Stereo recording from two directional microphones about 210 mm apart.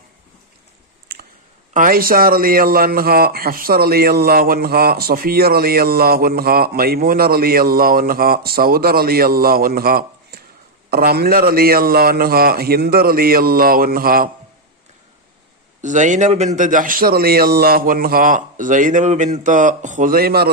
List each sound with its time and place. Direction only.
1.1 s a sound: 50° right (ahead or behind)
1.7 s a man's voice: 40° right (ahead or behind)
15.8 s a man's voice: 35° right (ahead or behind)